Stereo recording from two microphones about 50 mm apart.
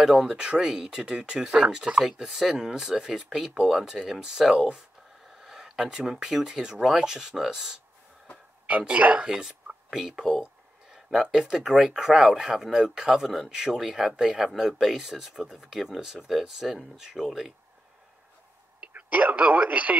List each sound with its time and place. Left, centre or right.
0.2 s speech: centre
8.8 s speech: right
9.2 s speech: centre
9.8 s a sound: centre
11.4 s speech: centre
18.8 s speech: right